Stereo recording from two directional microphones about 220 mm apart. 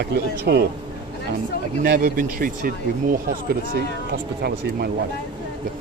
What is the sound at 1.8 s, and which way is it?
Speech, 40° right (ahead or behind).